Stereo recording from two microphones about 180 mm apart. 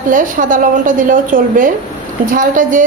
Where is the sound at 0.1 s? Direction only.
45° right (ahead or behind).